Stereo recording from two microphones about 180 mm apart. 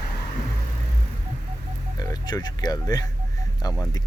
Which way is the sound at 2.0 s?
20° left (ahead or behind).